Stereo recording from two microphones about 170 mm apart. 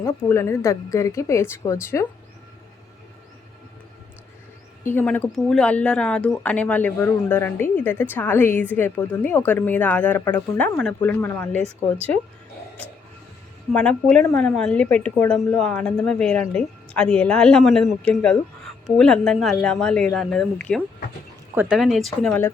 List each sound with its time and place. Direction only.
0.0 s speech: 15° left (ahead or behind)
4.8 s speech: 15° left (ahead or behind)
13.7 s a woman's voice: 5° left (ahead or behind)
21.5 s a woman's voice: 10° right (ahead or behind)
22.3 s speech: 15° left (ahead or behind)